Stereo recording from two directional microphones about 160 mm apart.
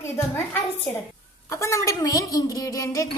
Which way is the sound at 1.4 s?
20° left (ahead or behind).